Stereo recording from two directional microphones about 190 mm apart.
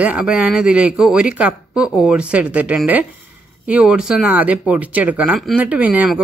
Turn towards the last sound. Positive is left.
turn(degrees=-10)  # may be behind; listen again after turning